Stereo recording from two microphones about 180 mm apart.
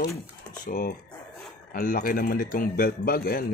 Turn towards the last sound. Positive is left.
turn(degrees=55)  # may be behind; listen again after turning